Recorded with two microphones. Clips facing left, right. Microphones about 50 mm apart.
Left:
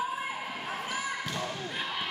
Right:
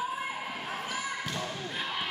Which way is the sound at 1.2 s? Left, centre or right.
Centre.